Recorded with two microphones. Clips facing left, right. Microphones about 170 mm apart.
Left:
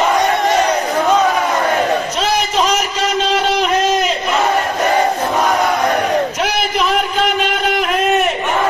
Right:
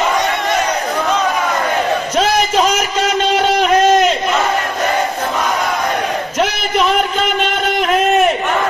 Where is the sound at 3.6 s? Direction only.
Centre (ahead or behind).